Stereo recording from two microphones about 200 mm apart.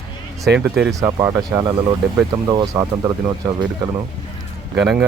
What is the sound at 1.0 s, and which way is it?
Speech, 15° right (ahead or behind).